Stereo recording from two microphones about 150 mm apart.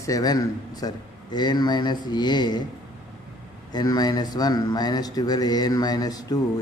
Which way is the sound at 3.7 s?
25° left (ahead or behind).